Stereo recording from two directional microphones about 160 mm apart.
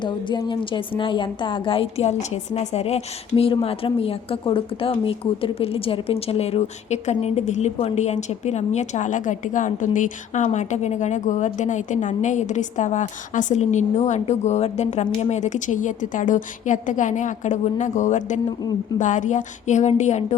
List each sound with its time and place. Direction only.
0.0 s a woman's voice: 30° left (ahead or behind); by 20.2 s 45° left (ahead or behind)